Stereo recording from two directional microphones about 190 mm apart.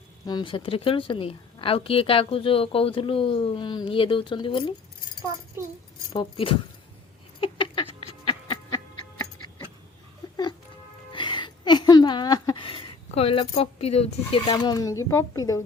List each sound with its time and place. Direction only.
0.3 s a woman's voice: 25° left (ahead or behind)
5.6 s speech: 15° right (ahead or behind)
6.1 s a woman's voice: 25° left (ahead or behind)
7.4 s a sound: 25° left (ahead or behind)
8.3 s music: 20° left (ahead or behind)
10.2 s a sound: 20° left (ahead or behind)